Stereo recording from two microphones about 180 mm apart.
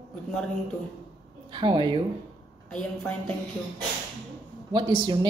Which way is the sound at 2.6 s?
5° left (ahead or behind).